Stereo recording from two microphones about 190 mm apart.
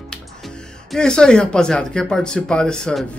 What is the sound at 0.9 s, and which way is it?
Speech, 5° left (ahead or behind).